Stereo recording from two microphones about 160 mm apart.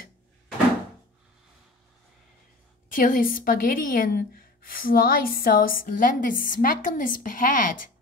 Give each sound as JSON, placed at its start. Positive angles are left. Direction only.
{"t": 2.9, "sound": "a woman's voice", "side_deg": 60}